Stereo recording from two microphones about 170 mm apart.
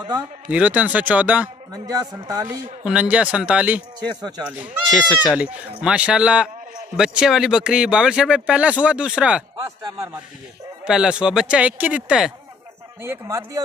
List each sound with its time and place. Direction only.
0.5 s speech: 10° right (ahead or behind)
1.7 s a man's voice: 20° right (ahead or behind)
2.8 s speech: 5° right (ahead or behind)
10.9 s speech: 5° right (ahead or behind)